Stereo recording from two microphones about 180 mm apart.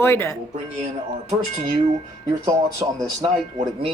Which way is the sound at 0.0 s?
15° left (ahead or behind).